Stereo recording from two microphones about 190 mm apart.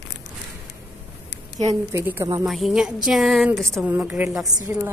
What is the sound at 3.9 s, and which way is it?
Speech, 10° right (ahead or behind).